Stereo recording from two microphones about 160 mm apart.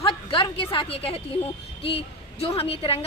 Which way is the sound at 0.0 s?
35° left (ahead or behind).